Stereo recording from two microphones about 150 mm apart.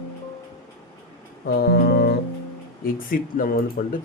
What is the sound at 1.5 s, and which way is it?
Music, 90° left.